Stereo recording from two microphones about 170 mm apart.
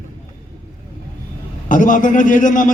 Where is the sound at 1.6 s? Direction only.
50° left (ahead or behind).